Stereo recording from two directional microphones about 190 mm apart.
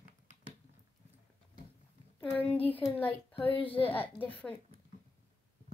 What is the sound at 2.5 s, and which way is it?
Speech, 10° left (ahead or behind).